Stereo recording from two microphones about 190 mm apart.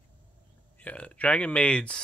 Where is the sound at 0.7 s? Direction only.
5° left (ahead or behind).